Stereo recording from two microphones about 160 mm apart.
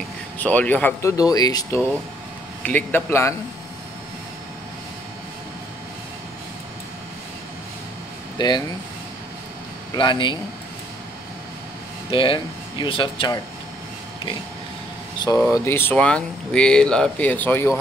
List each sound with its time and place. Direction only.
0.4 s speech: 10° left (ahead or behind)
2.6 s speech: 10° left (ahead or behind)
8.4 s speech: 25° left (ahead or behind)
9.9 s speech: 30° left (ahead or behind)
12.1 s speech: 35° left (ahead or behind)
15.2 s speech: 20° left (ahead or behind)